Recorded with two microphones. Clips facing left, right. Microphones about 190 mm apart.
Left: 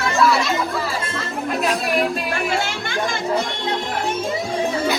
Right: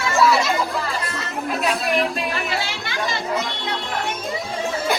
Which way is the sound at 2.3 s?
50° left (ahead or behind).